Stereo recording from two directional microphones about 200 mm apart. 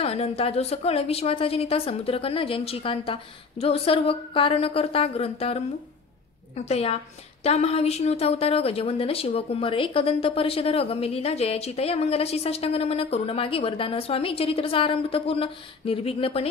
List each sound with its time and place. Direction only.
0.0 s a woman's voice: 30° left (ahead or behind)